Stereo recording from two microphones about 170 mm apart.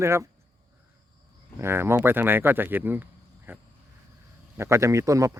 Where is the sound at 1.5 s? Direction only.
15° right (ahead or behind).